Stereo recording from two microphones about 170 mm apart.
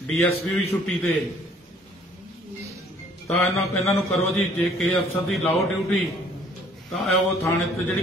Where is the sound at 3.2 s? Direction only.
Centre (ahead or behind).